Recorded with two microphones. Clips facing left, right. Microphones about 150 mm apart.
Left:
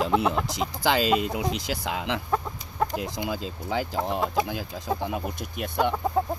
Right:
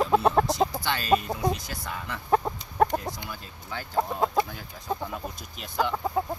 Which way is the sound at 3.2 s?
90° left.